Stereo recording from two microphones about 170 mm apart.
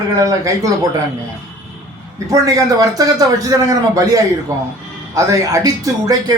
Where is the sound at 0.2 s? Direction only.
20° right (ahead or behind).